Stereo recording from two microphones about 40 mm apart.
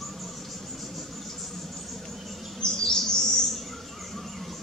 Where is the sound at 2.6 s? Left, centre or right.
Centre.